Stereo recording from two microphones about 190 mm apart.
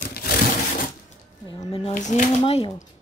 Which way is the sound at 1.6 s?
25° left (ahead or behind).